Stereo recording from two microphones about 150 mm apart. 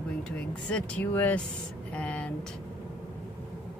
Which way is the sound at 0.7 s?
10° left (ahead or behind).